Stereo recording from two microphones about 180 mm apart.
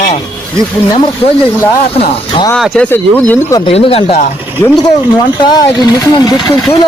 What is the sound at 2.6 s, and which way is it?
Speech, 5° left (ahead or behind).